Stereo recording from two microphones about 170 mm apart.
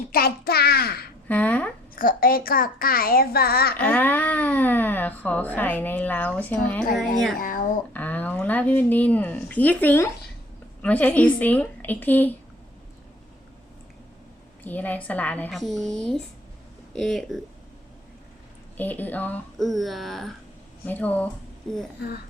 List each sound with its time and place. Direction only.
0.1 s a child's voice: 65° left (ahead or behind)
1.3 s a sound: 10° left (ahead or behind)
2.0 s a child's voice: 60° left (ahead or behind)
3.8 s speech: 10° left (ahead or behind)
7.3 s speech: 55° left (ahead or behind)
7.9 s speech: 10° left (ahead or behind)
14.6 s speech: 10° left (ahead or behind)
18.8 s speech: 10° left (ahead or behind)